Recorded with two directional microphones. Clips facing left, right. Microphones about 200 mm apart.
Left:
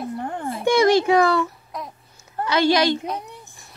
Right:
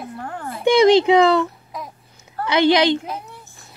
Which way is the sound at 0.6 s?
20° right (ahead or behind).